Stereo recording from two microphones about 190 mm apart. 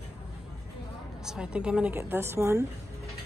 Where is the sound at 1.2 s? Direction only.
5° right (ahead or behind).